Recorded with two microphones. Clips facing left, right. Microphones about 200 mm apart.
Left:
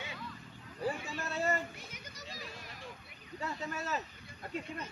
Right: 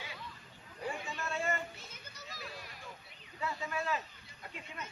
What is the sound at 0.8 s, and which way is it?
Vehicle, 35° left (ahead or behind).